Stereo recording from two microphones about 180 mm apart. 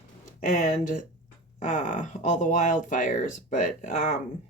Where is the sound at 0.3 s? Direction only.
45° left (ahead or behind).